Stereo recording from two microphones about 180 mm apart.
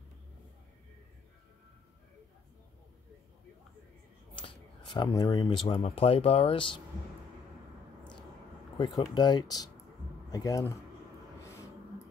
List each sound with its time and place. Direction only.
4.4 s speech: 25° left (ahead or behind)
8.7 s speech: 25° left (ahead or behind)